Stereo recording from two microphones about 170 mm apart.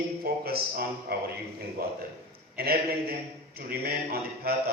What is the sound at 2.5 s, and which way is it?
Speech, 65° right (ahead or behind).